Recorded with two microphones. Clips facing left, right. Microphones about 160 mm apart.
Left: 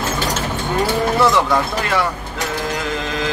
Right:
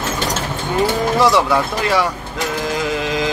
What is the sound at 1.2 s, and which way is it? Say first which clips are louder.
Speech: right 2 dB; 10° right (ahead or behind).